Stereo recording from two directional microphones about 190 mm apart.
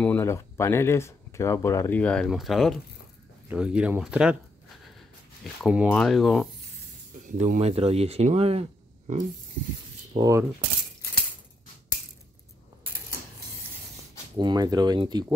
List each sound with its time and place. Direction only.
0.0 s speech: 10° left (ahead or behind); by 4.4 s 5° right (ahead or behind)
5.4 s speech: centre (ahead or behind)
7.2 s speech: 40° right (ahead or behind)
10.1 s speech: 20° right (ahead or behind)
14.3 s speech: 20° right (ahead or behind)